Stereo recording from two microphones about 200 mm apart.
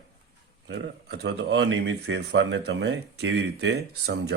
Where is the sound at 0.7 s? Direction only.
55° right (ahead or behind).